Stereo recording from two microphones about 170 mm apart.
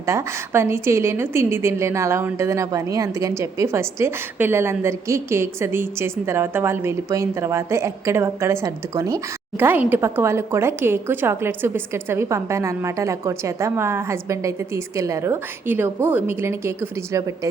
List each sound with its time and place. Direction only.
0.0 s a woman's voice: 15° right (ahead or behind)